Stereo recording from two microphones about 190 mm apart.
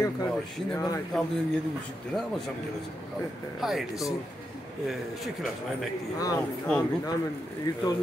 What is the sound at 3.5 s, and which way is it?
Speech, centre (ahead or behind).